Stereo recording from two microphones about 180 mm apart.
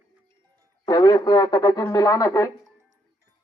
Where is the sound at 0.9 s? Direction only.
25° left (ahead or behind).